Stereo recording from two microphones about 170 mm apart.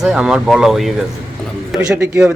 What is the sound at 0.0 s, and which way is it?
A man's voice, 5° right (ahead or behind).